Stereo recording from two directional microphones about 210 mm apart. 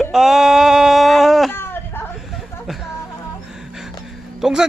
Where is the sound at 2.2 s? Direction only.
Centre (ahead or behind).